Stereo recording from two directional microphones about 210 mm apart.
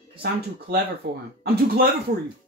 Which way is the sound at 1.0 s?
50° right (ahead or behind).